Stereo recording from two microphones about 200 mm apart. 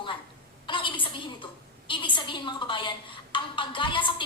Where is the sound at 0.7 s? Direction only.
25° left (ahead or behind).